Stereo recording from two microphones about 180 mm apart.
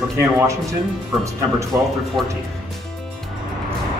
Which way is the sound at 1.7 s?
10° right (ahead or behind).